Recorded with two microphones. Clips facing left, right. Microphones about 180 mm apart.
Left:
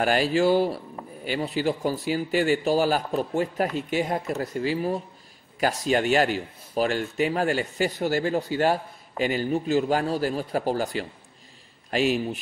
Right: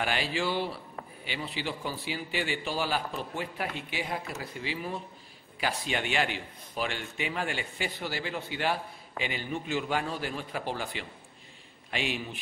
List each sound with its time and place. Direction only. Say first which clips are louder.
0.0 s speech: left 9 dB; 45° left (ahead or behind)